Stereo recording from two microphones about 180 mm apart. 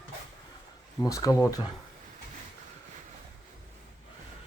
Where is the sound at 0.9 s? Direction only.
20° left (ahead or behind).